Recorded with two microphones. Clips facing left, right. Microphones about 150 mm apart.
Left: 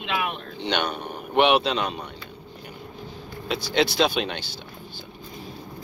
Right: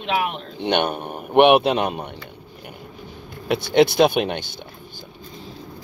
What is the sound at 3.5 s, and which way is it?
Speech, 55° right (ahead or behind).